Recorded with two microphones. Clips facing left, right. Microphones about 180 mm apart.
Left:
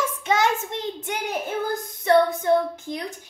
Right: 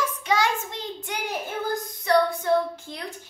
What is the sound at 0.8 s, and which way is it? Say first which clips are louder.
A child's voice: left 3 dB; 25° left (ahead or behind).